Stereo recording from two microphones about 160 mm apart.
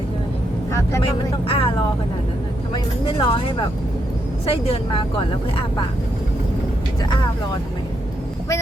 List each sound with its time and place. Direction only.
0.7 s vehicle: 15° left (ahead or behind)
1.5 s speech: 35° left (ahead or behind)
2.7 s speech: 30° left (ahead or behind)